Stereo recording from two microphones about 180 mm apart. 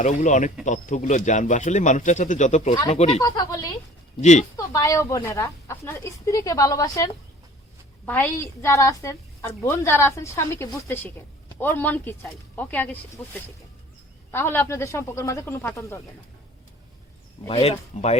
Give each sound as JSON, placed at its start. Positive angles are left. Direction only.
{"t": 0.0, "sound": "speech", "side_deg": 45}
{"t": 3.2, "sound": "speech", "side_deg": 25}
{"t": 4.2, "sound": "speech", "side_deg": 40}
{"t": 4.5, "sound": "a woman's voice", "side_deg": 20}
{"t": 14.3, "sound": "a woman's voice", "side_deg": 15}
{"t": 17.5, "sound": "speech", "side_deg": 35}